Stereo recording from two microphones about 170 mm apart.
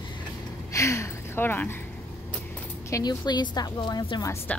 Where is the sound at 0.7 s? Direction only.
15° left (ahead or behind).